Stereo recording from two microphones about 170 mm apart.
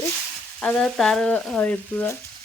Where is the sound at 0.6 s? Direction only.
5° left (ahead or behind).